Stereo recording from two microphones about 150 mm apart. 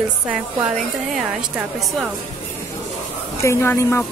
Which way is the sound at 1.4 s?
5° right (ahead or behind).